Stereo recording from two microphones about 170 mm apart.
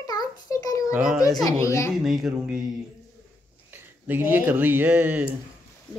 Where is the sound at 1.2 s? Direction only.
20° left (ahead or behind).